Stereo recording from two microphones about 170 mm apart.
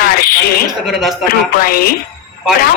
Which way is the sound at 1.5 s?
60° left (ahead or behind).